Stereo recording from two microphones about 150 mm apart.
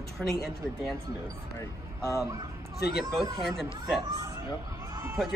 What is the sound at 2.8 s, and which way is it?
Speech, 90° left.